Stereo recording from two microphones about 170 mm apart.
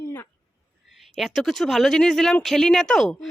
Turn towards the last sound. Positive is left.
turn(degrees=0)  # may be behind; listen again after turning